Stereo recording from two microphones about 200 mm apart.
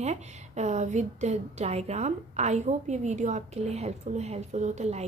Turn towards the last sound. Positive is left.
turn(degrees=-35)  # may be behind; listen again after turning